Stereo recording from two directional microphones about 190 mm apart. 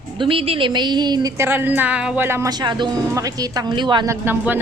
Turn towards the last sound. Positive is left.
turn(degrees=-10)  # may be behind; listen again after turning